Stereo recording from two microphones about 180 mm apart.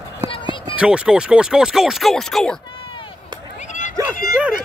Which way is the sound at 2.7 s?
30° left (ahead or behind).